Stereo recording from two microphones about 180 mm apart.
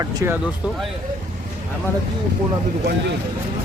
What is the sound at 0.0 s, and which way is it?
Speech, 15° right (ahead or behind).